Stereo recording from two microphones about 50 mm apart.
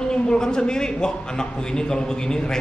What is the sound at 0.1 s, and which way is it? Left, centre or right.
A man's voice, centre.